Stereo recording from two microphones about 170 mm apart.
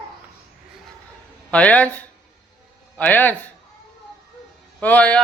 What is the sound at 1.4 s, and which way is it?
Speech, 5° left (ahead or behind).